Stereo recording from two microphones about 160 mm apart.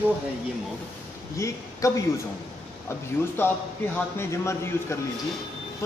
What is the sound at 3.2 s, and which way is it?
A man's voice, 15° left (ahead or behind).